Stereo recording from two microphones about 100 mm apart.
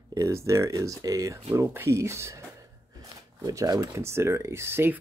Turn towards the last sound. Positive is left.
turn(degrees=-25)  # may be behind; listen again after turning